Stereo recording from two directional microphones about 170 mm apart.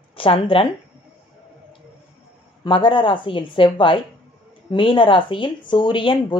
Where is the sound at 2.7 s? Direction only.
30° left (ahead or behind).